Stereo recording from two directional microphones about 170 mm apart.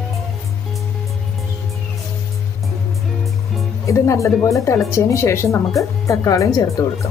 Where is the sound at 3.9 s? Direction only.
15° left (ahead or behind).